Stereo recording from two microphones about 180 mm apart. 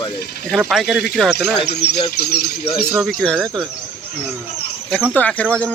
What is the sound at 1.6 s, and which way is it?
Speech, 65° left (ahead or behind).